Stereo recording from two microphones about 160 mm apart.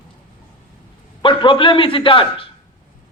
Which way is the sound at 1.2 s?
30° left (ahead or behind).